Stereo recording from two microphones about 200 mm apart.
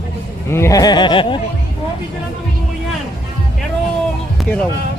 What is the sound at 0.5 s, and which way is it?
Speech, 15° left (ahead or behind).